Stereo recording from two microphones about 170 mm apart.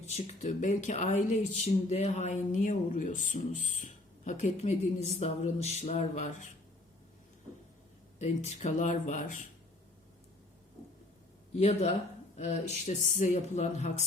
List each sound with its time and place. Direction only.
0.0 s speech: 40° left (ahead or behind)
8.2 s speech: 40° left (ahead or behind)
11.5 s speech: 40° left (ahead or behind)